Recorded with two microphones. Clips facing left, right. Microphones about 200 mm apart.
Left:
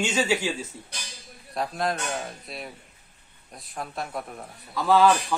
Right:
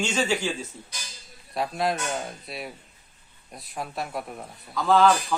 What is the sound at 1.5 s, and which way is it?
Speech, centre (ahead or behind).